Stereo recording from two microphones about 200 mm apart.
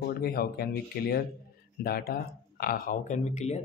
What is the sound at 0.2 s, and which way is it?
Speech, 50° left (ahead or behind).